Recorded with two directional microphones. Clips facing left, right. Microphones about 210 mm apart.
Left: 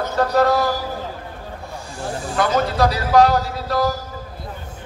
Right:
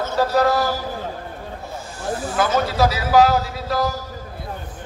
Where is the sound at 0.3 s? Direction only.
Centre (ahead or behind).